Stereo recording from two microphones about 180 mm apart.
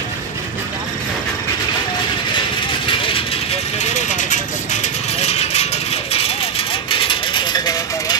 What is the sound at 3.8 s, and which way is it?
Vehicle, 45° left (ahead or behind).